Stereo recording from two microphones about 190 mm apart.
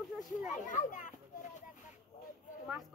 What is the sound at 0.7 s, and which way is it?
Speech, 40° left (ahead or behind).